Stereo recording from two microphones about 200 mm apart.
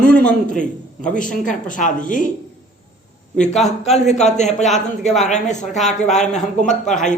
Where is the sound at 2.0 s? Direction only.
40° left (ahead or behind).